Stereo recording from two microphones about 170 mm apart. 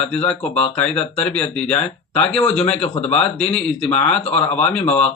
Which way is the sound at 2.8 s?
35° left (ahead or behind).